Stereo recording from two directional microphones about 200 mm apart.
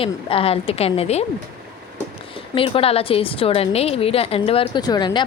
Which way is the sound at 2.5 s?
25° left (ahead or behind).